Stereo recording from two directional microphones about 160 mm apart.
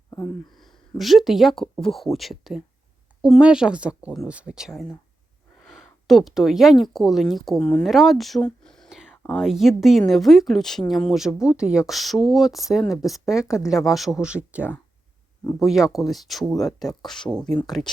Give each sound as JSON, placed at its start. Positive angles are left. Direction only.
{"t": 0.5, "sound": "speech", "side_deg": 0}
{"t": 16.6, "sound": "speech", "side_deg": 25}
{"t": 17.0, "sound": "speech", "side_deg": 0}